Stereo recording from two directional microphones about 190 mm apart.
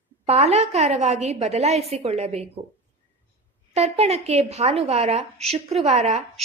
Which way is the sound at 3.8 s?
35° right (ahead or behind).